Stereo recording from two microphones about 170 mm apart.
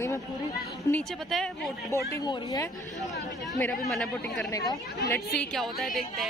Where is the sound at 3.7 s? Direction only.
Centre (ahead or behind).